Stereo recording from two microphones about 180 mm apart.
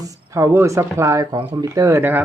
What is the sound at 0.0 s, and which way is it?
Speech, 20° right (ahead or behind).